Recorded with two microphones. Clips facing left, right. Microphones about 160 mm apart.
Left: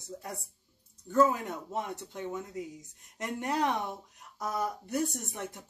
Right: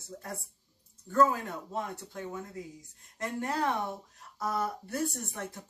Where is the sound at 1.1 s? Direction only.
15° left (ahead or behind).